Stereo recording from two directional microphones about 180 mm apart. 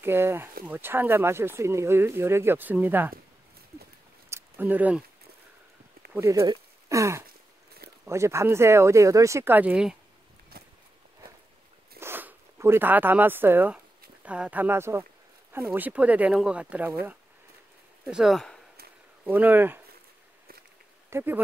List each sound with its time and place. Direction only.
0.0 s speech: 15° right (ahead or behind)
4.3 s a sound: 10° right (ahead or behind)
6.1 s speech: 15° right (ahead or behind)
10.5 s a sound: 55° right (ahead or behind)
12.0 s speech: 10° right (ahead or behind)
18.0 s speech: centre (ahead or behind)
19.2 s speech: 10° right (ahead or behind)
21.1 s speech: 10° right (ahead or behind)